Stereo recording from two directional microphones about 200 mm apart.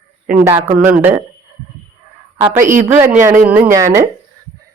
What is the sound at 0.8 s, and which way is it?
Speech, 10° right (ahead or behind).